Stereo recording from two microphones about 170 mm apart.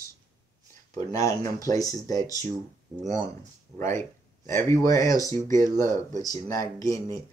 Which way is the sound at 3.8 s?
50° right (ahead or behind).